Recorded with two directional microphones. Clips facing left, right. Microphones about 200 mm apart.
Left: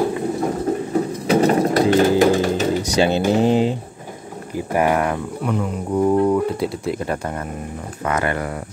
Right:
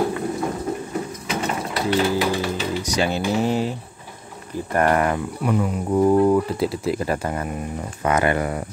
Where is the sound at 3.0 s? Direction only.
25° left (ahead or behind).